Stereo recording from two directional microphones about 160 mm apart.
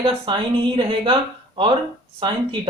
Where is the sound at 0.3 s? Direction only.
30° right (ahead or behind).